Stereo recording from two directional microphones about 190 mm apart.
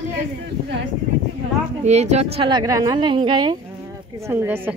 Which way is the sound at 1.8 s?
35° right (ahead or behind).